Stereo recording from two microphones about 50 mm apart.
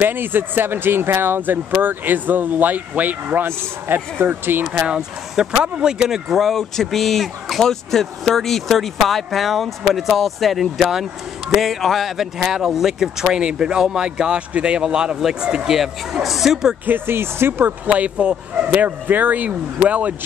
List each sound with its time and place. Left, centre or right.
0.0 s speech: right
5.3 s speech: centre
16.8 s speech: right
17.8 s speech: right
18.7 s speech: right